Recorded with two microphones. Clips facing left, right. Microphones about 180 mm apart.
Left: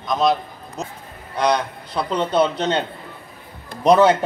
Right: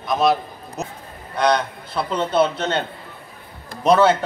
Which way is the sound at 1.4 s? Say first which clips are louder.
Right 1 dB; 10° left (ahead or behind).